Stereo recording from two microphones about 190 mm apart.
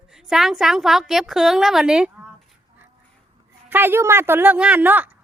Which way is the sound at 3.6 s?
10° right (ahead or behind).